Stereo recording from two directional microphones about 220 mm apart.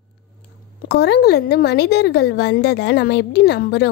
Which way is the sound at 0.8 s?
50° left (ahead or behind).